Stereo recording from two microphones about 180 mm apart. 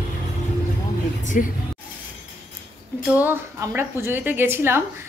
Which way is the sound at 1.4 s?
50° left (ahead or behind).